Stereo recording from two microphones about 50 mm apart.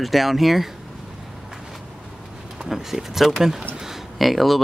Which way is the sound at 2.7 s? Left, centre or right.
Centre.